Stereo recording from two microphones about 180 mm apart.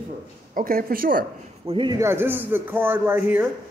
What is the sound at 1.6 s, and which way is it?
Speech, 25° right (ahead or behind).